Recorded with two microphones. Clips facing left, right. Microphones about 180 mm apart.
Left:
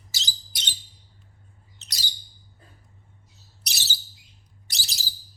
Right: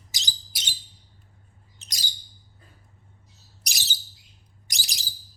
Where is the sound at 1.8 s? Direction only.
10° right (ahead or behind).